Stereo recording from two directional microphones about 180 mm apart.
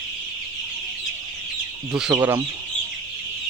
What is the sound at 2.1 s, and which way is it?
Speech, 15° right (ahead or behind).